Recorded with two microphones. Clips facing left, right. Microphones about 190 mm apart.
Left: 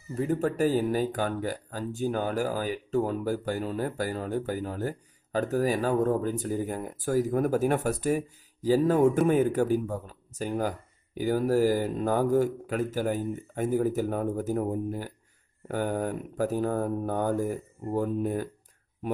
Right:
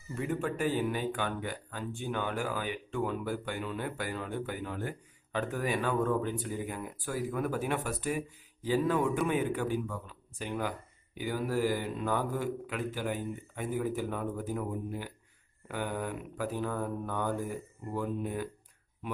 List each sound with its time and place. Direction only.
0.1 s speech: 35° left (ahead or behind)
15.7 s mantra: 40° left (ahead or behind)